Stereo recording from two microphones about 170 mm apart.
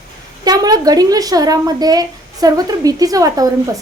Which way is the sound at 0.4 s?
25° right (ahead or behind).